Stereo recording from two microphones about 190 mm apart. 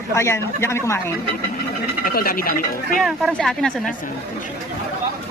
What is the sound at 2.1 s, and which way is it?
Speech, 50° left (ahead or behind).